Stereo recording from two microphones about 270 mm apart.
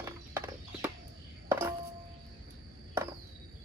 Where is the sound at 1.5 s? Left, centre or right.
Centre.